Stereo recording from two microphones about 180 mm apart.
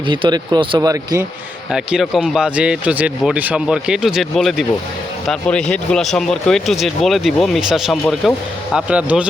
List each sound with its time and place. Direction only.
0.1 s speech: 25° right (ahead or behind)
1.7 s speech: centre (ahead or behind)